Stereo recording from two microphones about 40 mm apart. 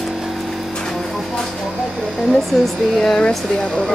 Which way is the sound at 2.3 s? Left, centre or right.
Centre.